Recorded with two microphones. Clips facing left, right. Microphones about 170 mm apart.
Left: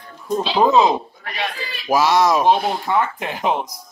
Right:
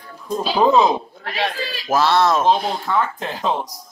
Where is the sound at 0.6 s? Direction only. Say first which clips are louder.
Even; centre (ahead or behind).